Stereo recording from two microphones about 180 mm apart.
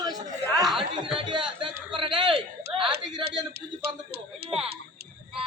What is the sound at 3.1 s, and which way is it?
Speech, 25° right (ahead or behind).